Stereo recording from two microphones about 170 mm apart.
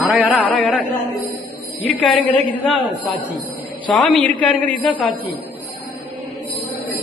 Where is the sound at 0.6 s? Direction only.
Centre (ahead or behind).